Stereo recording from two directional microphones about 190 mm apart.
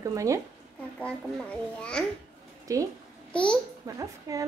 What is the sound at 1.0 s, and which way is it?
A child's voice, 5° left (ahead or behind).